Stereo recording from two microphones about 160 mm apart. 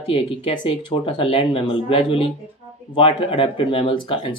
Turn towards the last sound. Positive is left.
turn(degrees=35)  # may be behind; listen again after turning